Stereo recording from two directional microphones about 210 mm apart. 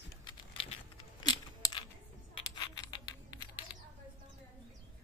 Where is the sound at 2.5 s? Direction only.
20° left (ahead or behind).